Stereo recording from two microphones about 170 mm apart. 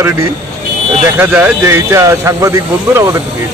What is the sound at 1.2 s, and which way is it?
Speech, 10° right (ahead or behind).